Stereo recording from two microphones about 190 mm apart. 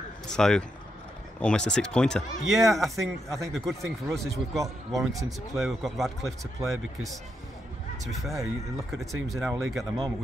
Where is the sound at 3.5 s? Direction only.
Centre (ahead or behind).